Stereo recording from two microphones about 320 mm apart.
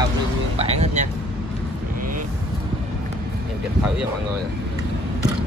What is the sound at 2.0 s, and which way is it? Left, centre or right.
Vehicle, right.